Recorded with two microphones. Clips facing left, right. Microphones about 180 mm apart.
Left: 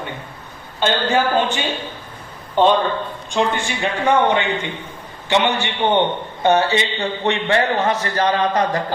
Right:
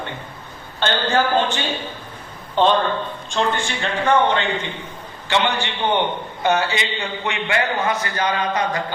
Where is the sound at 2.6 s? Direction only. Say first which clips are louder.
Left 2 dB; 10° left (ahead or behind).